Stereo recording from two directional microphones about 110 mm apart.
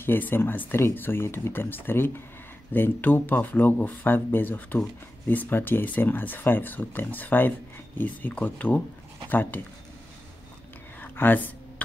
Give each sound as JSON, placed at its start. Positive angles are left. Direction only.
{"t": 0.0, "sound": "speech", "side_deg": 20}
{"t": 11.0, "sound": "whispering", "side_deg": 15}